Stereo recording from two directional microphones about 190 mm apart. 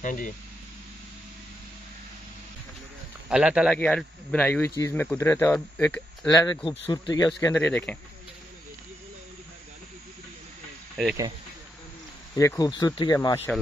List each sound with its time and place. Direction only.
0.0 s speech: 45° left (ahead or behind)
3.3 s a man's voice: 5° right (ahead or behind)
12.4 s speech: 20° left (ahead or behind)